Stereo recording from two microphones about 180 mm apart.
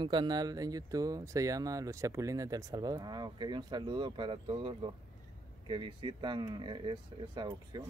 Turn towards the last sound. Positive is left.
turn(degrees=-25)  # may be behind; listen again after turning